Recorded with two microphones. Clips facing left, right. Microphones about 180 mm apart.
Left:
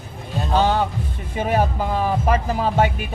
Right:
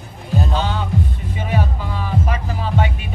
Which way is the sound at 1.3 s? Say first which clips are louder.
Left 4 dB; 45° left (ahead or behind).